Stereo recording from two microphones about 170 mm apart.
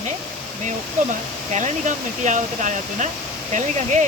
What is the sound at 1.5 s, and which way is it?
Speech, 45° right (ahead or behind).